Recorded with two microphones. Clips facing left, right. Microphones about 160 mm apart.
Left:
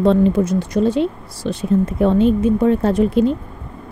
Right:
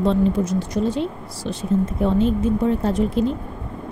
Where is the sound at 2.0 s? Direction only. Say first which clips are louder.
Left 6 dB; 75° left (ahead or behind).